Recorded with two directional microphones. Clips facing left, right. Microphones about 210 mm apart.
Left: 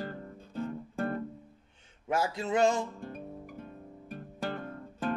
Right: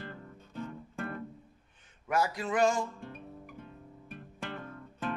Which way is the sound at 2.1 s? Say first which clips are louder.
Left 1 dB; 25° left (ahead or behind).